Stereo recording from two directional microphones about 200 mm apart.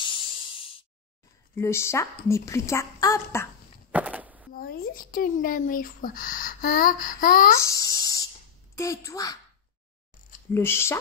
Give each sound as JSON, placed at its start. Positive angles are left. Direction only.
{"t": 0.0, "sound": "a sound", "side_deg": 25}
{"t": 1.5, "sound": "a woman's voice", "side_deg": 15}
{"t": 3.9, "sound": "chop", "side_deg": -5}
{"t": 4.6, "sound": "speech", "side_deg": 45}
{"t": 7.5, "sound": "a woman's voice", "side_deg": 15}
{"t": 8.0, "sound": "spray", "side_deg": 20}
{"t": 8.7, "sound": "a woman's voice", "side_deg": 15}
{"t": 10.5, "sound": "a woman's voice", "side_deg": 10}